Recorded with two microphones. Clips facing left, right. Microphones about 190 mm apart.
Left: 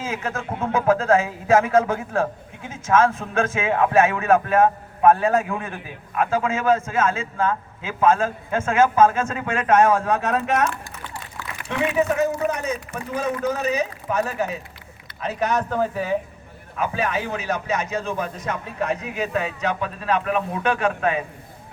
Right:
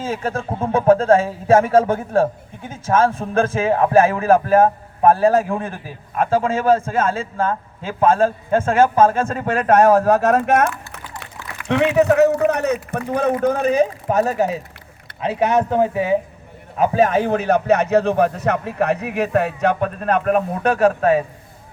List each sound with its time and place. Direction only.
0.0 s speech: 30° right (ahead or behind)
7.4 s a man's voice: 45° right (ahead or behind)
8.0 s speech: 35° right (ahead or behind); by 10.7 s 50° right (ahead or behind)
11.7 s a man's voice: 75° right (ahead or behind)
13.4 s speech: 55° right (ahead or behind); by 14.6 s 40° right (ahead or behind)
15.2 s speech: 25° right (ahead or behind)
16.7 s a man's voice: 40° right (ahead or behind)